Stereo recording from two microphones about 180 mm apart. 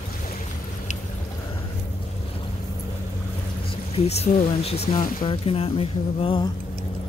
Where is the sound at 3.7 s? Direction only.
35° left (ahead or behind).